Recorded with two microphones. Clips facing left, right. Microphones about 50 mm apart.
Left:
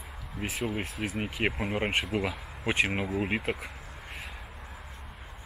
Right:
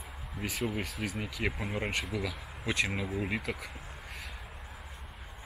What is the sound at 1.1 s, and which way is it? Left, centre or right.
Speech, left.